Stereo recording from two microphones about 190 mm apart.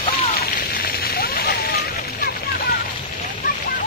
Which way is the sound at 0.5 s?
50° left (ahead or behind).